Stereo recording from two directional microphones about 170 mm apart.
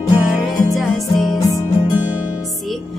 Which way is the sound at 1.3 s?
20° left (ahead or behind).